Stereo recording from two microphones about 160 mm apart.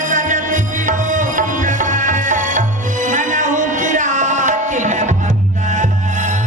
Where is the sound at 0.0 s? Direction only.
50° right (ahead or behind).